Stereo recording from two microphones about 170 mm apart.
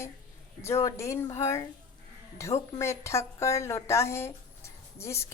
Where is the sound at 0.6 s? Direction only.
15° left (ahead or behind).